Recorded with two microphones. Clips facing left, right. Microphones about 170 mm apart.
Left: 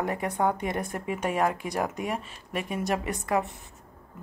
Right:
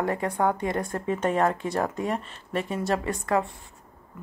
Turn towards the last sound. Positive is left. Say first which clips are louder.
# right 2 dB
turn(degrees=15)  # may be behind; listen again after turning